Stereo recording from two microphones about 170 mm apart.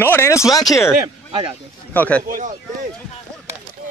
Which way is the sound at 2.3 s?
50° right (ahead or behind).